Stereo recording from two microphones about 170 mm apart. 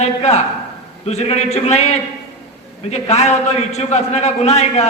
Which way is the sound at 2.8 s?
40° left (ahead or behind).